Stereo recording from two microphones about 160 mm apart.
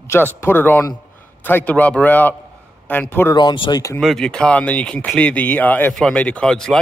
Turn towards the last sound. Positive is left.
turn(degrees=5)  # may be behind; listen again after turning